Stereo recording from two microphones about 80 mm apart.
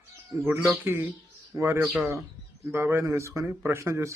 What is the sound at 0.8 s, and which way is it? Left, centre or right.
A man's voice, right.